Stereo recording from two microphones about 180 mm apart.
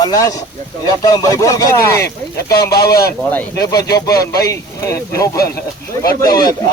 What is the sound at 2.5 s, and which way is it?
Speech, 60° left (ahead or behind).